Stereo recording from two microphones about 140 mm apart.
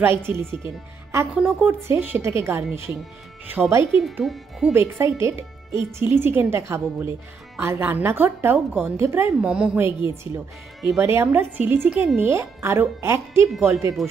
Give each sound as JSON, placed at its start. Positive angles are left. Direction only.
{"t": 0.0, "sound": "speech", "side_deg": -15}
{"t": 4.0, "sound": "speech", "side_deg": 0}
{"t": 4.7, "sound": "speech", "side_deg": -20}